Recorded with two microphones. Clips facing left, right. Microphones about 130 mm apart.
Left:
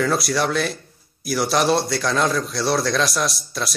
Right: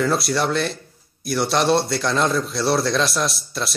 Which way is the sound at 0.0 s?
Centre (ahead or behind).